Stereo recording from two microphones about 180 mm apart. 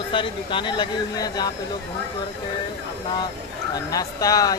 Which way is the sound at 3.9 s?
20° left (ahead or behind).